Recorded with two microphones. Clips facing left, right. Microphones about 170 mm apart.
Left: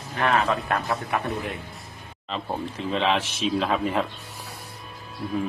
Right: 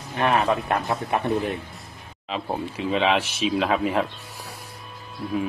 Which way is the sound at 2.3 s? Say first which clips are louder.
Right 2 dB; 5° right (ahead or behind).